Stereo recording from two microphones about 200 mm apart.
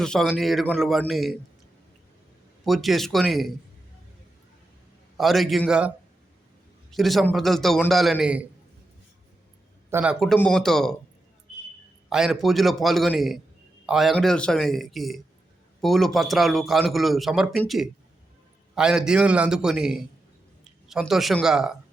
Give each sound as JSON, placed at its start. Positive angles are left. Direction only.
{"t": 0.0, "sound": "a man's voice", "side_deg": 5}
{"t": 2.6, "sound": "a man's voice", "side_deg": 0}
{"t": 5.1, "sound": "a man's voice", "side_deg": 0}
{"t": 6.9, "sound": "a man's voice", "side_deg": 0}
{"t": 9.9, "sound": "a man's voice", "side_deg": -5}
{"t": 12.0, "sound": "a man's voice", "side_deg": -5}